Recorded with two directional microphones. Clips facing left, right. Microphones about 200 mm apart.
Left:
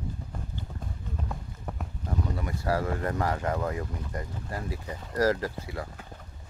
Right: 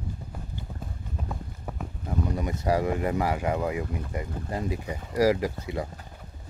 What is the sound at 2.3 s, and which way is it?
Speech, 20° right (ahead or behind).